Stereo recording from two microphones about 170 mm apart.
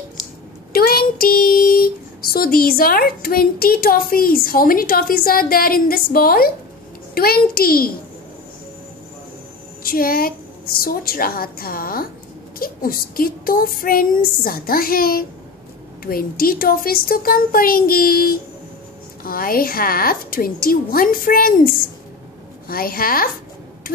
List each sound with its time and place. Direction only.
0.7 s speech: 60° left (ahead or behind)
9.8 s speech: 60° left (ahead or behind)